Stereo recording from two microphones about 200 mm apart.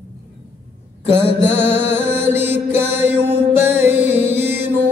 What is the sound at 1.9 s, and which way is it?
Mantra, 10° right (ahead or behind).